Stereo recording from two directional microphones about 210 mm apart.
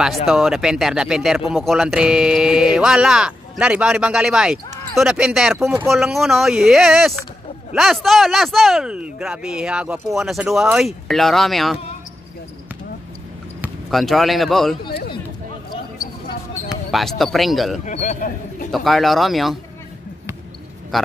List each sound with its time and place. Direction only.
0.0 s speech: centre (ahead or behind)
13.6 s speech: centre (ahead or behind)
14.9 s a sound: 50° left (ahead or behind)
16.6 s speech: centre (ahead or behind)
17.8 s speech: 35° left (ahead or behind)
18.7 s speech: centre (ahead or behind)
20.9 s speech: centre (ahead or behind)